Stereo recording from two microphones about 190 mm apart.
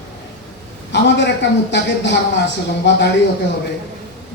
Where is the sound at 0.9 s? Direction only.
65° left (ahead or behind).